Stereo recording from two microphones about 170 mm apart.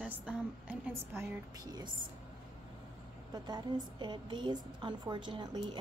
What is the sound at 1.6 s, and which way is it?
Speech, 25° right (ahead or behind).